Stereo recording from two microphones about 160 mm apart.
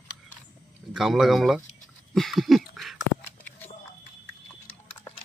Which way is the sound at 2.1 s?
Centre (ahead or behind).